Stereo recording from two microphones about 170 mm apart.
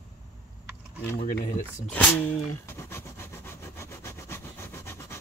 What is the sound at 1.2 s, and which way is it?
Speech, 55° left (ahead or behind).